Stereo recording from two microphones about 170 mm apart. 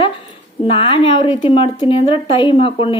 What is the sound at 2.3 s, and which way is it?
Speech, 30° left (ahead or behind).